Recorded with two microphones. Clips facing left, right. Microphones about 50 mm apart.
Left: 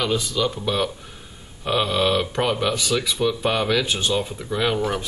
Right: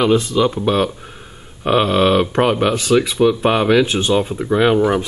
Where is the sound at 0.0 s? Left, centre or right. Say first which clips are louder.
Right 8 dB; right.